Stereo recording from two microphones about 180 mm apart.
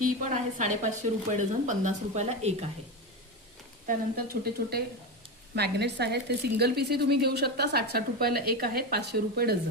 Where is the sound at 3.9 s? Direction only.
55° right (ahead or behind).